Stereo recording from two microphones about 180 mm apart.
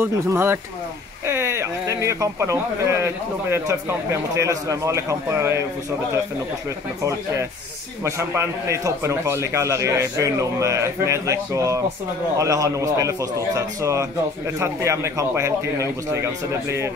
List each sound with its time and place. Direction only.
0.0 s a man's voice: 15° right (ahead or behind)
8.0 s a man's voice: 15° right (ahead or behind)